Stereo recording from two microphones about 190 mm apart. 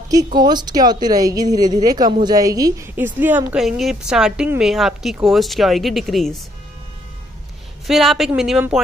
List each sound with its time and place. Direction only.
0.1 s a woman's voice: 20° right (ahead or behind); by 6.4 s centre (ahead or behind)
7.8 s a woman's voice: centre (ahead or behind)